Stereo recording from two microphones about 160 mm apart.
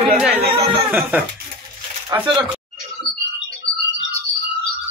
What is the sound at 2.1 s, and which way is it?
Speech, 25° right (ahead or behind).